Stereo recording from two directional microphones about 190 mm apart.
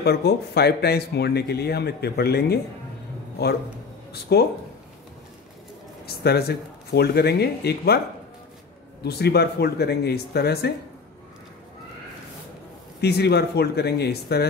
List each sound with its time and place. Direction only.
0.0 s speech: 55° left (ahead or behind)
4.1 s speech: 55° left (ahead or behind)
6.0 s speech: 55° left (ahead or behind)
9.0 s speech: 55° left (ahead or behind)
13.0 s speech: 60° left (ahead or behind)